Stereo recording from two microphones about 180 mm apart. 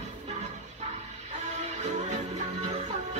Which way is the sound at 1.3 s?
40° right (ahead or behind).